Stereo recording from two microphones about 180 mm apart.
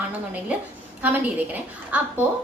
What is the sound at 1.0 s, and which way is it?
Speech, 10° right (ahead or behind).